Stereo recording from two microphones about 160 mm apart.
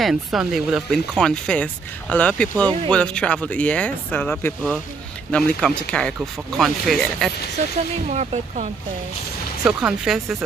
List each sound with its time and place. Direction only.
0.0 s speech: 5° right (ahead or behind)
8.1 s speech: 45° right (ahead or behind)
9.7 s speech: 5° right (ahead or behind)